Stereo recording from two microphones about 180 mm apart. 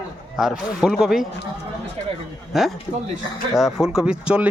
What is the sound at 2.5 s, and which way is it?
Speech, centre (ahead or behind).